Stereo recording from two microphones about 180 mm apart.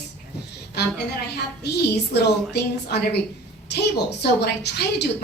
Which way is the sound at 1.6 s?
65° left (ahead or behind).